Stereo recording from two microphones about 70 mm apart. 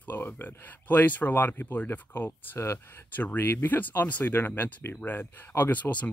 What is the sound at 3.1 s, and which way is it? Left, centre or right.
Speech, left.